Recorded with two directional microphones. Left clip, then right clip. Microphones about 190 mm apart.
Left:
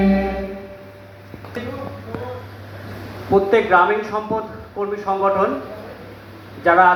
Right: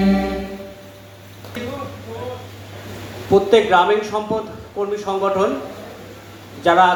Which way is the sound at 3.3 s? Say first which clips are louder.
Right 1 dB; 65° right (ahead or behind).